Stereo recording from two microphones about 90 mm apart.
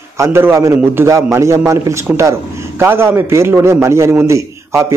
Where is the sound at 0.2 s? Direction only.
25° right (ahead or behind).